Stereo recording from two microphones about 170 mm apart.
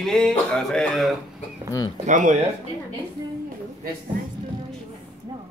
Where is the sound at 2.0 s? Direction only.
45° right (ahead or behind).